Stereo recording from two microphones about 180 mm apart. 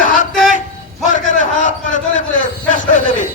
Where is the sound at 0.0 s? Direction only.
45° left (ahead or behind).